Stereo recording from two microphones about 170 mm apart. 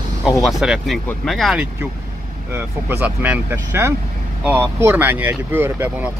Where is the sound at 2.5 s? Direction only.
10° right (ahead or behind).